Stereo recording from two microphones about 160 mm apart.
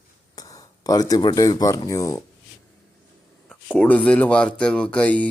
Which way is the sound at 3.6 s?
10° left (ahead or behind).